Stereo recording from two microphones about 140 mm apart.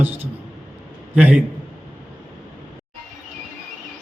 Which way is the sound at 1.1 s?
10° right (ahead or behind).